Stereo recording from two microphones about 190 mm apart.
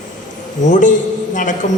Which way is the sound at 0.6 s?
40° left (ahead or behind).